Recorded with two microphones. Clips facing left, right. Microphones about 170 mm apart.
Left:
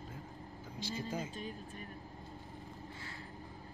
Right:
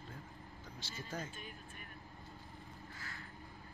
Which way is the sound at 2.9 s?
25° left (ahead or behind).